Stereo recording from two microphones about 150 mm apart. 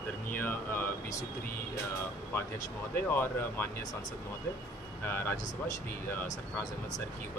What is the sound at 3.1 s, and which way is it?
Speech, 15° left (ahead or behind).